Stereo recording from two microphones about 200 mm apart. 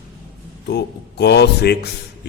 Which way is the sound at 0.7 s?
55° left (ahead or behind).